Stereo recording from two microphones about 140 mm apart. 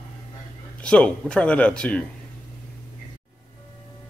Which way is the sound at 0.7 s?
10° left (ahead or behind).